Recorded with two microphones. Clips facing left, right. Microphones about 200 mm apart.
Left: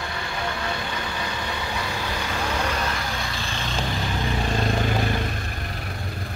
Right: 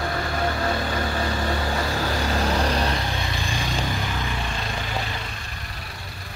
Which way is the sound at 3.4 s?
15° right (ahead or behind).